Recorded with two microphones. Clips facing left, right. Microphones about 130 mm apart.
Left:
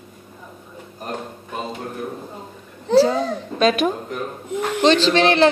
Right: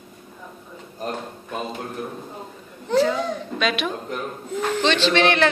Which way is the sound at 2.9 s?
35° left (ahead or behind).